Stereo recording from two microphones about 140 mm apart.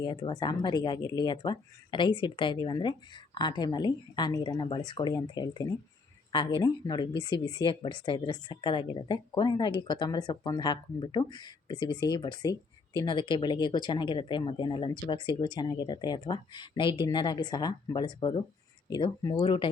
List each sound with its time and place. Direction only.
0.0 s speech: 30° left (ahead or behind)